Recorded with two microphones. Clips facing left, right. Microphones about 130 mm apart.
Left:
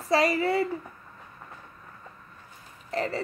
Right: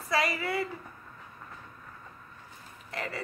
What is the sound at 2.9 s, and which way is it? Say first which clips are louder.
Speech: left 8 dB; 35° left (ahead or behind).